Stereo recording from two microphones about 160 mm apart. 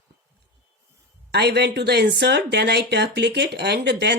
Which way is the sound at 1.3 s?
90° right.